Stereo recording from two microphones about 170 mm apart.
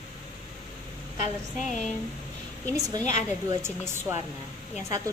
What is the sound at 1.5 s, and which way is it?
Speech, 45° left (ahead or behind).